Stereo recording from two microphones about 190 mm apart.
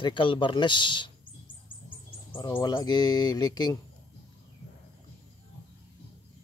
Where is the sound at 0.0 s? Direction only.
25° left (ahead or behind).